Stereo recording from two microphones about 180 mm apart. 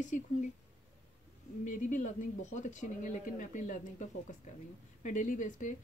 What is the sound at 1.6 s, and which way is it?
Speech, 45° left (ahead or behind).